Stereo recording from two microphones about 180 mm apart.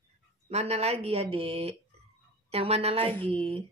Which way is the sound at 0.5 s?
35° right (ahead or behind).